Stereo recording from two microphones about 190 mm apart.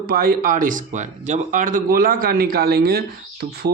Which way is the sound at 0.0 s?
50° right (ahead or behind).